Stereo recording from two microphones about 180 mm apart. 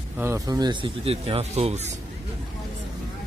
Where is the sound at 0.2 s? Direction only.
15° right (ahead or behind); by 2.0 s 40° right (ahead or behind).